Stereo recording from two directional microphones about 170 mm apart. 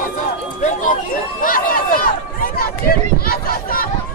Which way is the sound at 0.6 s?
50° left (ahead or behind).